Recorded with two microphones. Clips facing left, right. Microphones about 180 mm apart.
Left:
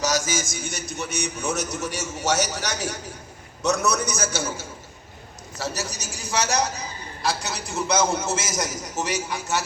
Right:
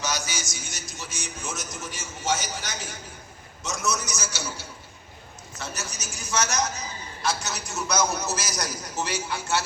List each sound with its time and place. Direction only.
0.0 s a man's voice: 45° left (ahead or behind)
5.5 s a man's voice: 35° left (ahead or behind); by 9.6 s 15° left (ahead or behind)